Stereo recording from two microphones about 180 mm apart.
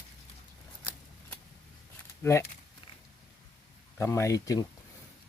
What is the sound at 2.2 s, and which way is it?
Speech, 15° left (ahead or behind).